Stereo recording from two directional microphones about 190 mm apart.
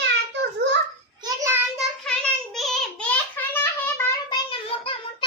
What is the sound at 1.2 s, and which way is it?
Child singing, 15° right (ahead or behind).